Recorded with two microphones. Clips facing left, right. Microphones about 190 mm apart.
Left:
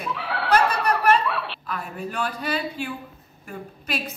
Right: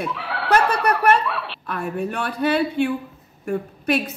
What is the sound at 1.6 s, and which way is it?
A woman's voice, 65° right (ahead or behind).